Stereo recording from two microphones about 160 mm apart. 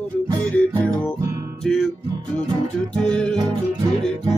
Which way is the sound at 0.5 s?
10° left (ahead or behind).